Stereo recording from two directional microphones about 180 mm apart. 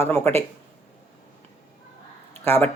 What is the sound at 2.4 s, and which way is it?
Speech, 10° left (ahead or behind).